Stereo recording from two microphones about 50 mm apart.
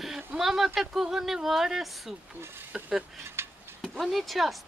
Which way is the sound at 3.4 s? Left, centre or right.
Right.